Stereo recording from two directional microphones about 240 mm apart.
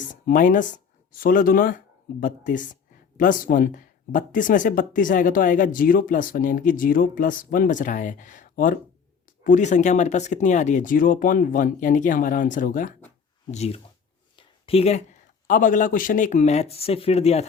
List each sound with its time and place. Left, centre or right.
0.0 s speech: left
14.3 s a sound: left
15.4 s speech: left